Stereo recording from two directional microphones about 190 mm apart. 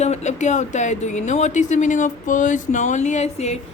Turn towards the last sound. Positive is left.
turn(degrees=35)  # may be behind; listen again after turning